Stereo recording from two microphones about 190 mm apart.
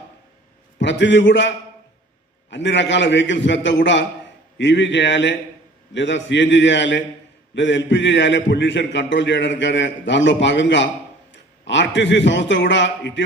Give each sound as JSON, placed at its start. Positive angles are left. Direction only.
{"t": 0.8, "sound": "a man's voice", "side_deg": 70}